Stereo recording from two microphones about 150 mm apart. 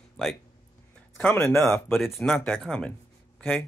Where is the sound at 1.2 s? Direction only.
15° left (ahead or behind).